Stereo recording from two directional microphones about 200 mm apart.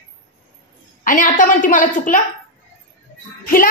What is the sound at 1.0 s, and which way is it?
A woman's voice, 40° left (ahead or behind).